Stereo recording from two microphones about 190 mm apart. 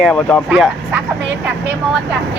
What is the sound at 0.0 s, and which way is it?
Speech, 5° left (ahead or behind).